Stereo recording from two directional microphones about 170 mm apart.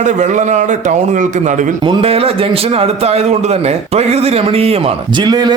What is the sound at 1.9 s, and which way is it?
A man's voice, 35° right (ahead or behind).